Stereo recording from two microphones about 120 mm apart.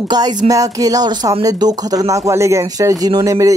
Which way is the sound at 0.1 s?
35° right (ahead or behind).